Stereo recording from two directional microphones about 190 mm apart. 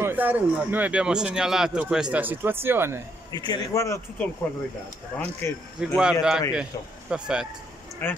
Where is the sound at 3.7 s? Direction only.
15° left (ahead or behind).